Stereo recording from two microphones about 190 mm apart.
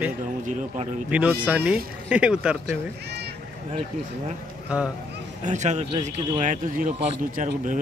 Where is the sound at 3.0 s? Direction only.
60° right (ahead or behind).